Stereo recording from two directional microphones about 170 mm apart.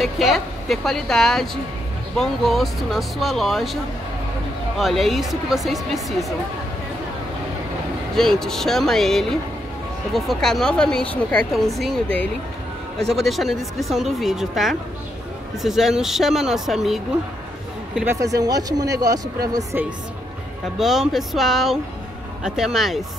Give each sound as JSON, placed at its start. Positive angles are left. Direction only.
{"t": 0.0, "sound": "a woman's voice", "side_deg": 0}
{"t": 4.7, "sound": "a woman's voice", "side_deg": 0}
{"t": 8.2, "sound": "a woman's voice", "side_deg": 0}
{"t": 17.9, "sound": "a woman's voice", "side_deg": -15}
{"t": 20.8, "sound": "a woman's voice", "side_deg": 0}